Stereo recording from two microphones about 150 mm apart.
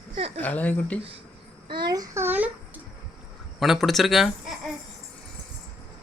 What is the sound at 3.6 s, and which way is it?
Speech, centre (ahead or behind).